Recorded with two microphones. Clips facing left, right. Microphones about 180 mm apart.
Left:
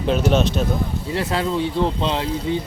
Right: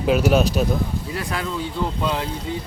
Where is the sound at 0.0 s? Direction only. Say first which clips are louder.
Right 1 dB; 5° right (ahead or behind).